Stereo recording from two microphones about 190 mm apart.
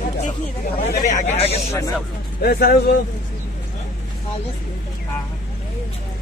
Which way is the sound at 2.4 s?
55° left (ahead or behind).